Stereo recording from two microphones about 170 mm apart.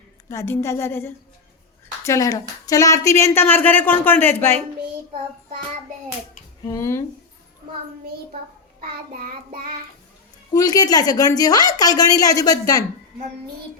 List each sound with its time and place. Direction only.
0.3 s a woman's voice: 15° left (ahead or behind)
6.7 s a woman's voice: 15° left (ahead or behind)
10.5 s a woman's voice: 20° left (ahead or behind)